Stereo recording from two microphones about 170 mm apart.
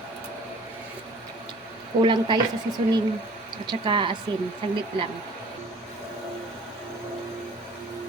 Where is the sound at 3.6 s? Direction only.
30° right (ahead or behind).